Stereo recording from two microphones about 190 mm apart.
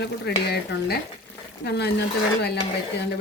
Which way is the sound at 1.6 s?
60° left (ahead or behind).